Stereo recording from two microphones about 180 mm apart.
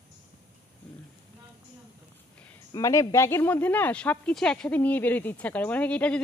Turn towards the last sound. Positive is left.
turn(degrees=5)  # may be behind; listen again after turning